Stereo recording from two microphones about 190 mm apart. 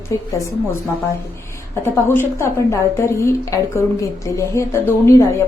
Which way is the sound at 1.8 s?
15° left (ahead or behind).